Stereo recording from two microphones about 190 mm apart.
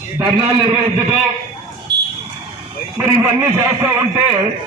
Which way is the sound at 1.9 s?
25° right (ahead or behind).